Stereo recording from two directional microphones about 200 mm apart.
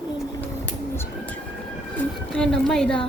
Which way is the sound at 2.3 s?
5° left (ahead or behind).